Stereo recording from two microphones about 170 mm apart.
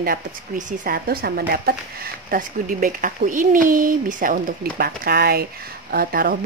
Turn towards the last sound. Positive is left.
turn(degrees=-55)  # may be behind; listen again after turning